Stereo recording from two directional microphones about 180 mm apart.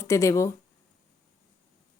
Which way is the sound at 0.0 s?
15° left (ahead or behind).